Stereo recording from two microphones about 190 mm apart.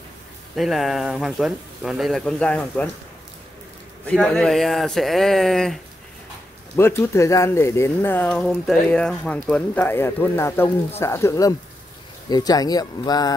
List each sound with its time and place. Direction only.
0.6 s speech: centre (ahead or behind)
4.0 s speech: 5° left (ahead or behind)
6.8 s speech: 15° left (ahead or behind)